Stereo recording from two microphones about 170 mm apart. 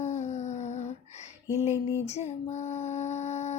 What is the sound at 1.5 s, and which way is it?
Female singing, 15° right (ahead or behind).